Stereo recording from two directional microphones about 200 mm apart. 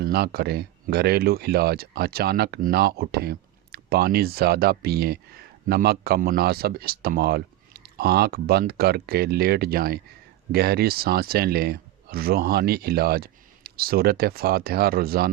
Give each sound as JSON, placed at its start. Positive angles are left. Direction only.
{"t": 0.0, "sound": "speech", "side_deg": -50}